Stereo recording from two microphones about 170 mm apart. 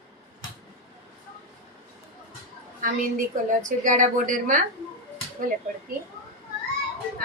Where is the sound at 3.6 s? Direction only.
50° right (ahead or behind).